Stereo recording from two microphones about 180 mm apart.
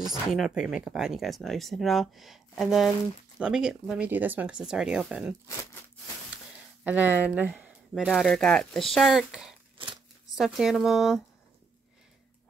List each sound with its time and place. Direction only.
0.3 s speech: 5° right (ahead or behind)
6.3 s speech: 10° right (ahead or behind)
9.8 s shuffling cards: 30° right (ahead or behind)
10.3 s speech: centre (ahead or behind)